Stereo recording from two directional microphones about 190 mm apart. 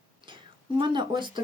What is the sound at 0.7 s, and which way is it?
Speech, 25° right (ahead or behind).